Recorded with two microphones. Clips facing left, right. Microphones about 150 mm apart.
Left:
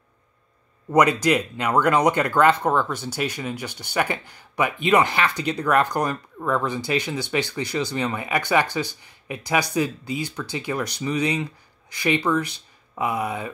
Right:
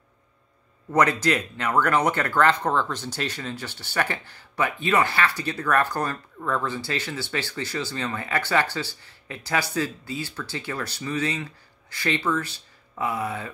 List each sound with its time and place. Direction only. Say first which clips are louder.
0.8 s speech: left 3 dB; 15° left (ahead or behind)